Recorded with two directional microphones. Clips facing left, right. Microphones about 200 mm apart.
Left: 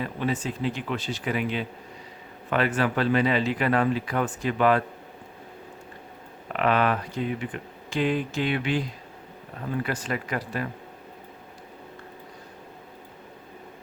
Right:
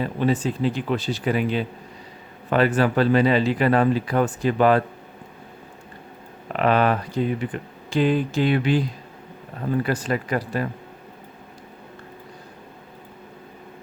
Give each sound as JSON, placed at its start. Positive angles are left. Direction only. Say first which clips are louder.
{"t": 0.0, "sound": "speech", "louder": "right 6 dB", "side_deg": -30}
{"t": 6.5, "sound": "speech", "louder": "right 4 dB", "side_deg": -35}
{"t": 9.8, "sound": "speech", "louder": "right 5 dB", "side_deg": -35}